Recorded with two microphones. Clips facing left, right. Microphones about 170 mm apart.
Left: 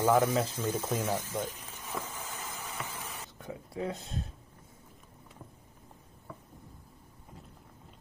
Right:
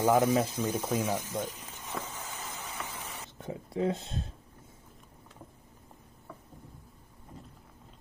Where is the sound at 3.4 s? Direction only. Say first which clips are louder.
Right 5 dB; 25° right (ahead or behind).